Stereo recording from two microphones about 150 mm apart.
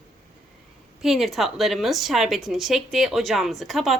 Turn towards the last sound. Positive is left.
turn(degrees=0)  # may be behind; listen again after turning